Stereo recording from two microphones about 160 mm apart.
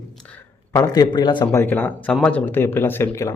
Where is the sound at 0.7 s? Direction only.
25° left (ahead or behind).